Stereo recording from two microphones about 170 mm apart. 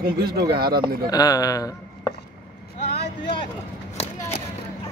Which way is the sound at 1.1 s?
20° left (ahead or behind).